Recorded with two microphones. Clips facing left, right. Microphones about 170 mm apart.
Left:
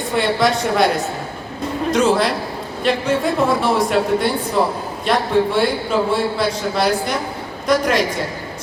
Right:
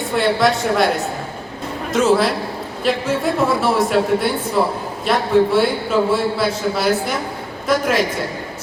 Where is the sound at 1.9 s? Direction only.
Centre (ahead or behind).